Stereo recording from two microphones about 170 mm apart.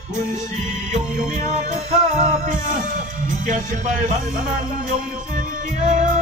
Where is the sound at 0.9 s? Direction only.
45° right (ahead or behind).